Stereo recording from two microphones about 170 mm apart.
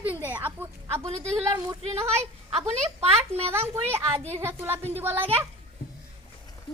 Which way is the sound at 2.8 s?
40° right (ahead or behind).